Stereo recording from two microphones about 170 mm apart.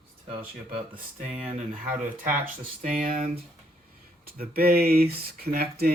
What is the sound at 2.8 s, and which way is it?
Speech, 40° right (ahead or behind).